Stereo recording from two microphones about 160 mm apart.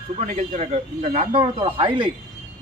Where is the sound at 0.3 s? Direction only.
50° right (ahead or behind); by 2.0 s 35° right (ahead or behind).